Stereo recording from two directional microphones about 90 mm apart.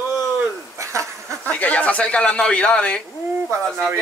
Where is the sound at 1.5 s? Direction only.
15° left (ahead or behind).